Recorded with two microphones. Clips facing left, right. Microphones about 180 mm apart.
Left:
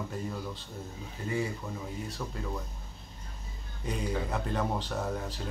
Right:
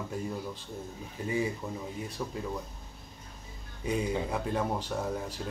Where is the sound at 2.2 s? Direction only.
10° right (ahead or behind).